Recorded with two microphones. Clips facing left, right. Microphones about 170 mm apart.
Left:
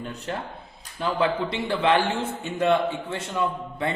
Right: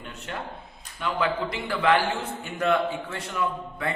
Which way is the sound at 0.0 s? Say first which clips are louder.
Left 6 dB; 35° left (ahead or behind).